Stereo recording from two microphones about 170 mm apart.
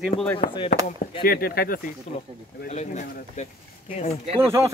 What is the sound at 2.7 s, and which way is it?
Speech, 45° left (ahead or behind).